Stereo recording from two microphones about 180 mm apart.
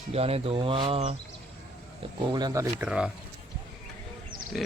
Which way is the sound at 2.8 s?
5° right (ahead or behind).